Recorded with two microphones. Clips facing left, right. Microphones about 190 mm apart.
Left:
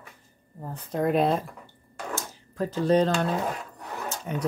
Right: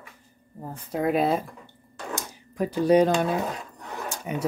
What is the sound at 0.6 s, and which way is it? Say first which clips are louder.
Speech: even; 10° right (ahead or behind).